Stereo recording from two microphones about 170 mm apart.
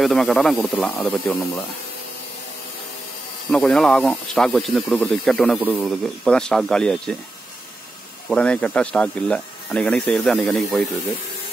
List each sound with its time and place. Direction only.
0.0 s speech: centre (ahead or behind)
3.5 s speech: 5° left (ahead or behind)
8.3 s speech: 5° left (ahead or behind)